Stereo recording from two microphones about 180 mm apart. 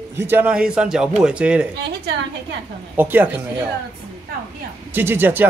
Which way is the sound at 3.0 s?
10° right (ahead or behind).